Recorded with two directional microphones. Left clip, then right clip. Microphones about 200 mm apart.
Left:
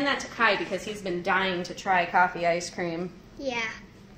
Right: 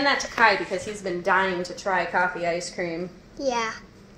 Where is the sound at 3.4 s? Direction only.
10° right (ahead or behind).